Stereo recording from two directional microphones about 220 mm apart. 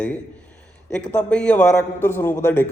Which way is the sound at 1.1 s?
5° left (ahead or behind).